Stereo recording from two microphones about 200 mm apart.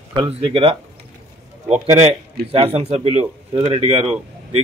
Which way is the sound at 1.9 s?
30° right (ahead or behind).